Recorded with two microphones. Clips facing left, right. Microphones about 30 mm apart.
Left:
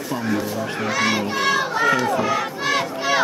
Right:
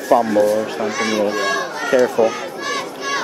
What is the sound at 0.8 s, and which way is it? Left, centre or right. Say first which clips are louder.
Speech: right 1 dB; centre.